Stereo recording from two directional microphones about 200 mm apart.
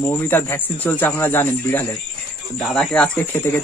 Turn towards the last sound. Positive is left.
turn(degrees=5)  # may be behind; listen again after turning